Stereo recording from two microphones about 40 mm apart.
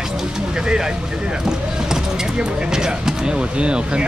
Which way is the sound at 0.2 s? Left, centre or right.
Centre.